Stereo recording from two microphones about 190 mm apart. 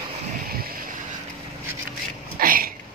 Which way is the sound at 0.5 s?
50° right (ahead or behind).